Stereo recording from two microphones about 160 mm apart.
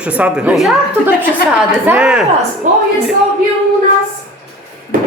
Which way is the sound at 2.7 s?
50° right (ahead or behind).